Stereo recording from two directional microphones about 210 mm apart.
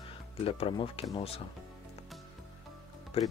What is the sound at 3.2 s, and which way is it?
Speech, 30° left (ahead or behind).